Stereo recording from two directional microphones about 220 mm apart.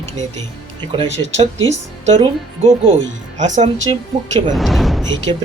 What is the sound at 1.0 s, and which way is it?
Speech, 60° right (ahead or behind).